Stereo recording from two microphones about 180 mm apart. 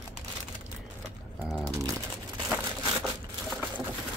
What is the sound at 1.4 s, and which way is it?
Speech, 15° right (ahead or behind).